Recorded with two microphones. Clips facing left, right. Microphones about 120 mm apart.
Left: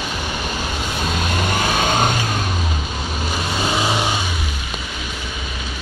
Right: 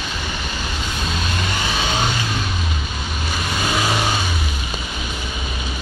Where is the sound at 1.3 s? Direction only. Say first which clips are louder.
Left 6 dB; 50° left (ahead or behind).